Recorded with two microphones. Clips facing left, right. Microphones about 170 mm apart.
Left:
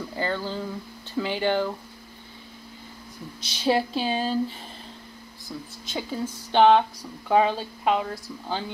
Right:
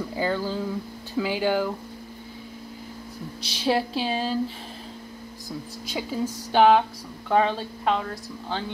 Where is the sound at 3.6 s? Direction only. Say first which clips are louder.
Left 1 dB; centre (ahead or behind).